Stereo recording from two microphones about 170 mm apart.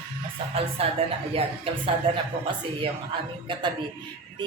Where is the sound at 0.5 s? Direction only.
35° right (ahead or behind).